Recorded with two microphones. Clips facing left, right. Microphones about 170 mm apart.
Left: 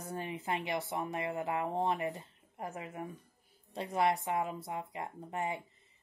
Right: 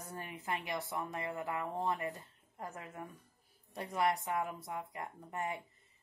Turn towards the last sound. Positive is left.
turn(degrees=20)  # may be behind; listen again after turning